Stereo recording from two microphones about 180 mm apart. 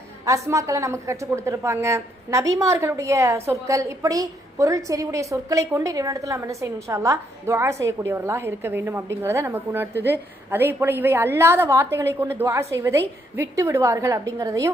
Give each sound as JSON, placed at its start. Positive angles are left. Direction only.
{"t": 0.3, "sound": "a woman's voice", "side_deg": -15}